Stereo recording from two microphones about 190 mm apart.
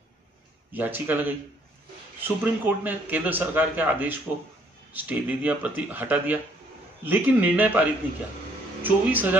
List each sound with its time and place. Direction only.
0.7 s a man's voice: 10° right (ahead or behind)